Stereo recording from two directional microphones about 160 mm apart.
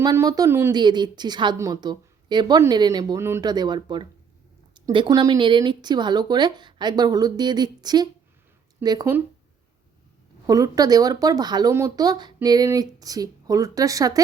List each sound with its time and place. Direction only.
0.0 s speech: 20° right (ahead or behind)
3.4 s speech: 25° right (ahead or behind)
10.4 s speech: 25° right (ahead or behind)